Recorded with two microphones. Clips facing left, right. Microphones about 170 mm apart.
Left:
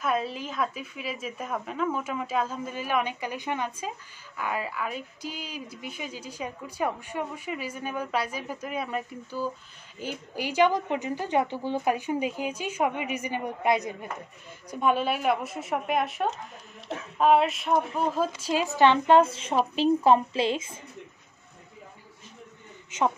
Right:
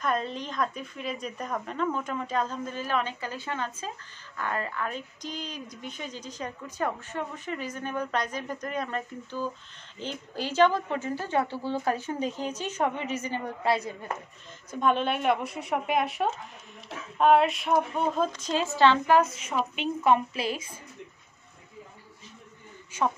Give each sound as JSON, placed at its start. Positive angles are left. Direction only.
{"t": 0.0, "sound": "speech", "side_deg": 5}
{"t": 22.8, "sound": "speech", "side_deg": 20}